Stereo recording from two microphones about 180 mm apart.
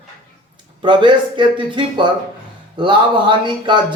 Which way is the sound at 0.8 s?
25° right (ahead or behind).